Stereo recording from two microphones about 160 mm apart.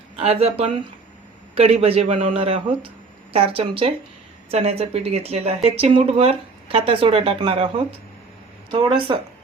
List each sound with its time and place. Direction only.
0.2 s speech: 40° right (ahead or behind)